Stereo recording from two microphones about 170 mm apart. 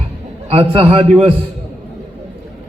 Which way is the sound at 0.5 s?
30° right (ahead or behind).